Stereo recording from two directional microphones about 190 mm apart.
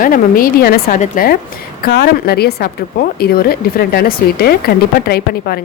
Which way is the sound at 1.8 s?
60° left (ahead or behind).